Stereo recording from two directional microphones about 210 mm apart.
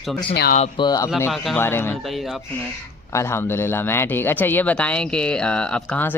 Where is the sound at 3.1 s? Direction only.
10° left (ahead or behind).